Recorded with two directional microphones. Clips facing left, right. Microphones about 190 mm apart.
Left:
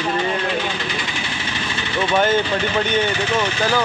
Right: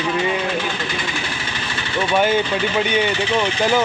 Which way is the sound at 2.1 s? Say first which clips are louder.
Even; 10° right (ahead or behind).